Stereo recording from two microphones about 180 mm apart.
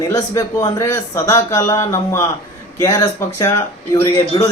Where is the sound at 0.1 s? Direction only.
20° left (ahead or behind).